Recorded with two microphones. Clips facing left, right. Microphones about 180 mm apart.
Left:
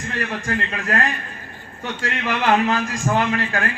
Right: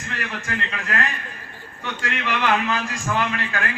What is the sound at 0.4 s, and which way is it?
A man's voice, 40° left (ahead or behind).